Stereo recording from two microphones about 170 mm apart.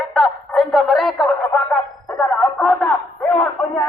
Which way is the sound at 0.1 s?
Centre (ahead or behind).